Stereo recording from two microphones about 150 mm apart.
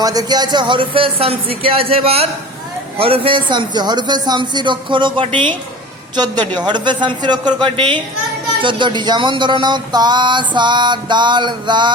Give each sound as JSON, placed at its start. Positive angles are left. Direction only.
{"t": 0.0, "sound": "speech", "side_deg": -25}